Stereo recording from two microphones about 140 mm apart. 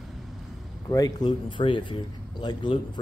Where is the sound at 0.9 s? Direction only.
25° left (ahead or behind).